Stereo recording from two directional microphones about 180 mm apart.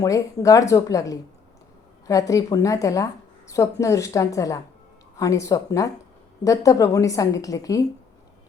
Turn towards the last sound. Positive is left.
turn(degrees=20)  # may be behind; listen again after turning